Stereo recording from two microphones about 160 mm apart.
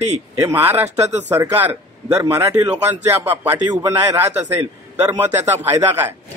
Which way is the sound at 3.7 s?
25° right (ahead or behind).